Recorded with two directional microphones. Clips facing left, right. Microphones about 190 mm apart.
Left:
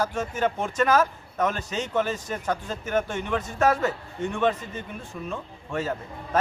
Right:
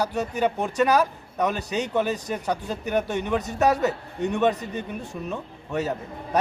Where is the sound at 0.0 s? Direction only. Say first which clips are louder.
Right 2 dB; 15° right (ahead or behind).